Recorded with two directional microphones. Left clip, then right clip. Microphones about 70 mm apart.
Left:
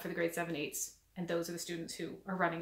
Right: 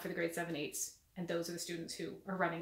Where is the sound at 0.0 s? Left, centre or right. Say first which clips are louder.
Left 2 dB; left.